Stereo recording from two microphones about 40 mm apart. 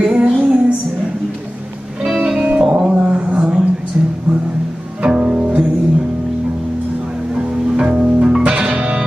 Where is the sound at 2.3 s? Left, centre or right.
Right.